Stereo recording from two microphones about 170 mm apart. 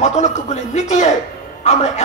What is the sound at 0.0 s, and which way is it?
A man's voice, 45° left (ahead or behind).